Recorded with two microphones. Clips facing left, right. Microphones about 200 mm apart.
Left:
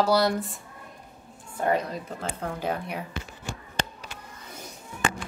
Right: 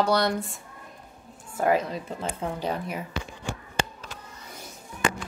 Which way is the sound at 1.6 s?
5° right (ahead or behind).